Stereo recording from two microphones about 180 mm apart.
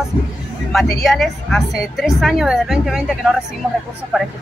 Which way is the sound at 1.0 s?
Centre (ahead or behind).